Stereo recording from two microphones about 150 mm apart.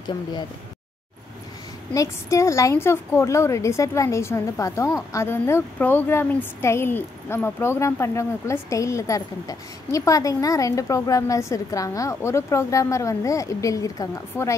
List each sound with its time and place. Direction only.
0.0 s a woman's voice: 30° left (ahead or behind)
2.0 s a woman's voice: 20° left (ahead or behind)